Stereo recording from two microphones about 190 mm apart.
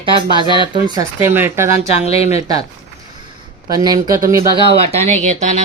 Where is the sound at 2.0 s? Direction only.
35° left (ahead or behind).